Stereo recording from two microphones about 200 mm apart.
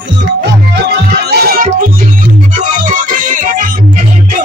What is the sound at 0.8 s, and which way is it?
Music, 50° right (ahead or behind).